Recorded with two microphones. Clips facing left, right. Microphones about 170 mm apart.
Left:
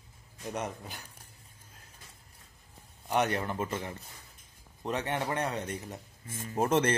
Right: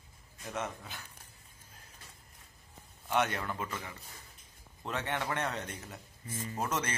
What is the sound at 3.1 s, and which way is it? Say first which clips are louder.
Speech: left 3 dB; 20° left (ahead or behind).